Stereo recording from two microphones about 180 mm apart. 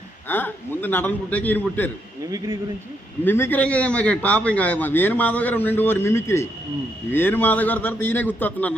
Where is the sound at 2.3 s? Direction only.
20° right (ahead or behind).